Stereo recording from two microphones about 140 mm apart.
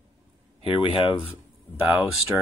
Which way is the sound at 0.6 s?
40° left (ahead or behind).